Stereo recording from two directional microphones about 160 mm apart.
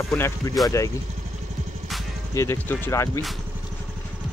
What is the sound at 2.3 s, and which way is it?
Speech, 15° left (ahead or behind).